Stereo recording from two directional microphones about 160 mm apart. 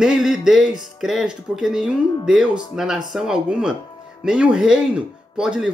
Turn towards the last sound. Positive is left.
turn(degrees=-5)  # may be behind; listen again after turning